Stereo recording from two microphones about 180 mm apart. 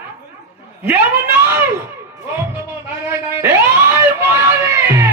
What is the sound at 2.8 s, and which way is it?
Speech, 15° right (ahead or behind).